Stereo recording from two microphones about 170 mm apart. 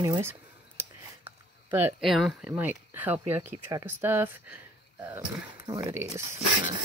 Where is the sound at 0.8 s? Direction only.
10° right (ahead or behind).